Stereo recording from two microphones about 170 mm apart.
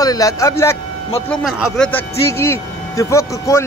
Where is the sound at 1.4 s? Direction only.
5° right (ahead or behind).